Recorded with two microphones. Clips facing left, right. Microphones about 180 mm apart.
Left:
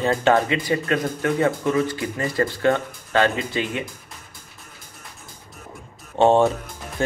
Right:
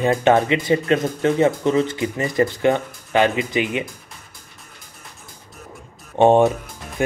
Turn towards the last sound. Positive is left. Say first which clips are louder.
# right 2 dB
turn(degrees=-15)  # may be behind; listen again after turning